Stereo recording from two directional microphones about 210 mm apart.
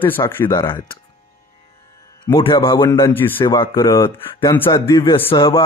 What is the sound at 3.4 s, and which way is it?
Speech, 20° left (ahead or behind).